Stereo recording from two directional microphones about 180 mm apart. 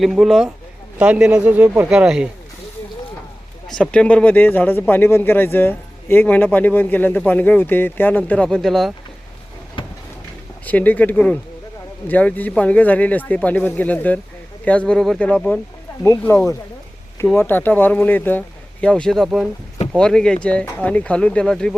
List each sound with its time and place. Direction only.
0.0 s speech: centre (ahead or behind)
3.7 s speech: 5° left (ahead or behind)
9.8 s a sound: 30° left (ahead or behind)
10.7 s speech: 10° left (ahead or behind)